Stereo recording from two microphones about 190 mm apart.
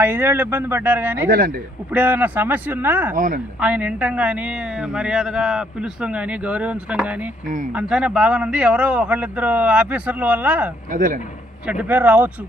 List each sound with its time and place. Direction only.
0.0 s a woman's voice: 10° right (ahead or behind)
1.3 s a man's voice: 50° right (ahead or behind)
1.9 s a woman's voice: 10° right (ahead or behind)
3.2 s a man's voice: 45° right (ahead or behind)
3.6 s a woman's voice: 10° right (ahead or behind)
10.9 s a man's voice: 45° right (ahead or behind)
11.6 s a woman's voice: 5° right (ahead or behind)